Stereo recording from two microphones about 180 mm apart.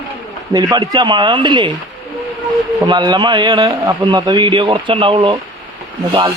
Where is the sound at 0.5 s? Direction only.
20° right (ahead or behind).